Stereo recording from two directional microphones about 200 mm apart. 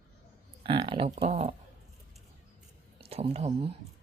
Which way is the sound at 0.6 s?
25° right (ahead or behind).